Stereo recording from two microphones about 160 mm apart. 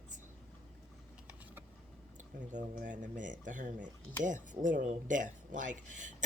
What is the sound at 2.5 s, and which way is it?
Speech, 55° right (ahead or behind).